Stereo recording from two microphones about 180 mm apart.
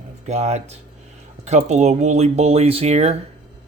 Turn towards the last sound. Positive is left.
turn(degrees=-35)  # may be behind; listen again after turning